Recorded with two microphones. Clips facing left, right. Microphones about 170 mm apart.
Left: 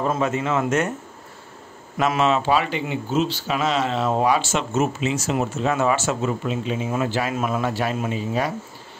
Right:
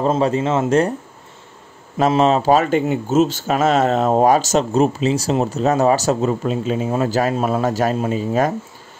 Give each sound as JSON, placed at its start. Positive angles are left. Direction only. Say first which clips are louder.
{"t": 0.0, "sound": "speech", "louder": "right 5 dB", "side_deg": -30}
{"t": 2.0, "sound": "speech", "louder": "right 5 dB", "side_deg": -35}